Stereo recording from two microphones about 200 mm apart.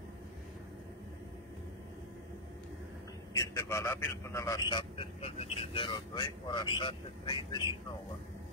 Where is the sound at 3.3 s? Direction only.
15° left (ahead or behind).